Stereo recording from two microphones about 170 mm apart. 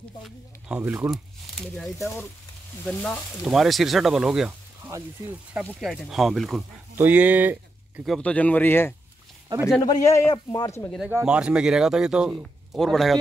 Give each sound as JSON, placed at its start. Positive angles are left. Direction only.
{"t": 0.2, "sound": "speech", "side_deg": -5}
{"t": 5.8, "sound": "speech", "side_deg": 0}
{"t": 7.0, "sound": "speech", "side_deg": -10}
{"t": 11.1, "sound": "speech", "side_deg": -10}